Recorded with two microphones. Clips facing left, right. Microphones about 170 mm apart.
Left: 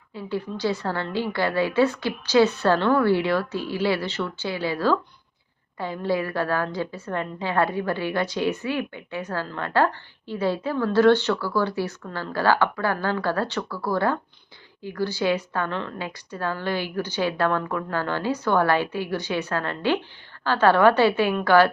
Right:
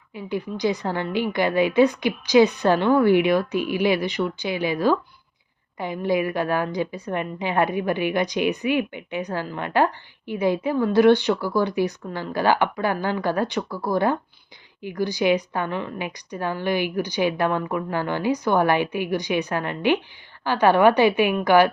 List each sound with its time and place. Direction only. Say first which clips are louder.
0.1 s a woman's voice: right 1 dB; 15° right (ahead or behind)